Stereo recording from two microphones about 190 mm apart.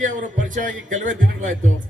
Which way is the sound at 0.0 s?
40° right (ahead or behind).